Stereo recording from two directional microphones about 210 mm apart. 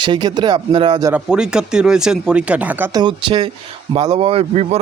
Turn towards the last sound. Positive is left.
turn(degrees=-30)  # may be behind; listen again after turning